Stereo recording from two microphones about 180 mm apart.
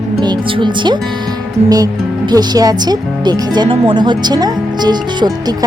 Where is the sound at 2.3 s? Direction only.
20° right (ahead or behind).